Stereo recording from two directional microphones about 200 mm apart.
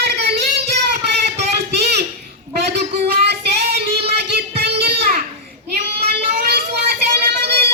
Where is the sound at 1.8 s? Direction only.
55° right (ahead or behind).